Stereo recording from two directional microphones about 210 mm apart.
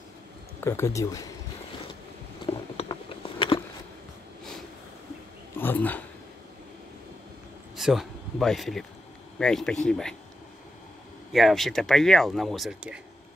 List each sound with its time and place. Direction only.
0.7 s speech: 15° left (ahead or behind)
2.4 s a sound: 25° left (ahead or behind)
5.6 s speech: 10° left (ahead or behind)
7.7 s speech: centre (ahead or behind)
11.3 s speech: centre (ahead or behind)